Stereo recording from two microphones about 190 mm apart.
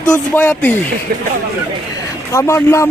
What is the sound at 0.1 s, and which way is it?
Speech, 10° left (ahead or behind).